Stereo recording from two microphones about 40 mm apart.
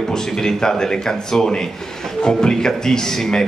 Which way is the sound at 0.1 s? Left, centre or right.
Centre.